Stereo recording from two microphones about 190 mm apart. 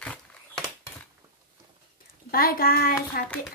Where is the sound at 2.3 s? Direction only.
50° left (ahead or behind).